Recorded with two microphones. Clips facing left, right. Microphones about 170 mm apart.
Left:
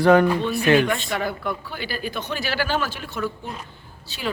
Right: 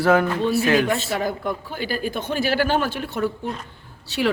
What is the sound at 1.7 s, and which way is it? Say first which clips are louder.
Speech: right 4 dB; 45° right (ahead or behind).